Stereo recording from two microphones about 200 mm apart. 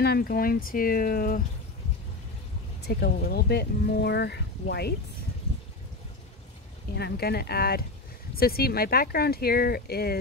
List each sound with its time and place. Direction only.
0.0 s speech: 50° left (ahead or behind)
2.9 s speech: 55° left (ahead or behind)
7.0 s speech: 55° left (ahead or behind)